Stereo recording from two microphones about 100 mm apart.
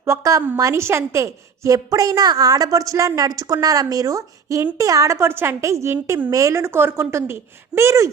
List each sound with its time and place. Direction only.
0.0 s a woman's voice: 30° right (ahead or behind)